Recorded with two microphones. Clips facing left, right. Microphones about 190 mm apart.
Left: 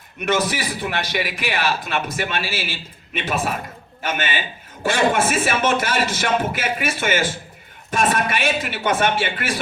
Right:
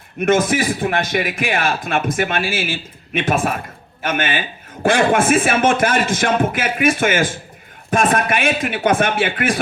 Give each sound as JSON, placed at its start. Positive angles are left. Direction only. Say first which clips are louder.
{"t": 0.2, "sound": "a man's voice", "louder": "right 6 dB", "side_deg": -50}